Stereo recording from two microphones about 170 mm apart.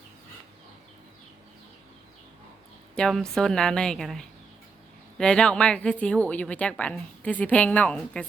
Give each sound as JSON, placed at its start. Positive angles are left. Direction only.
{"t": 2.9, "sound": "a woman's voice", "side_deg": 5}